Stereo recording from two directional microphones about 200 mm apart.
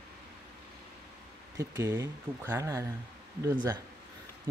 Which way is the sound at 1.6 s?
15° right (ahead or behind).